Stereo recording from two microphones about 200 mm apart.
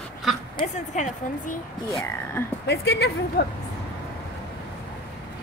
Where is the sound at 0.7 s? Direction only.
35° left (ahead or behind).